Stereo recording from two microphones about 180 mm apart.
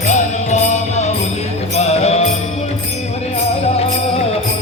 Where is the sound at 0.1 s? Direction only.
40° left (ahead or behind).